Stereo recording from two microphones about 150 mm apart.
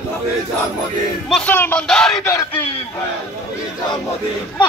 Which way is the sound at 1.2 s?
5° left (ahead or behind).